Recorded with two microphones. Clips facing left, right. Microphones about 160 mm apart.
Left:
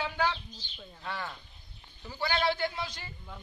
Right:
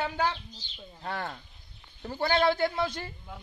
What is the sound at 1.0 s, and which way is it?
A man's voice, 55° right (ahead or behind).